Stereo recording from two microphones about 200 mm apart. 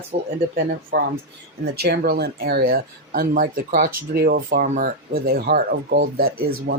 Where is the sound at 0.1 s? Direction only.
35° right (ahead or behind).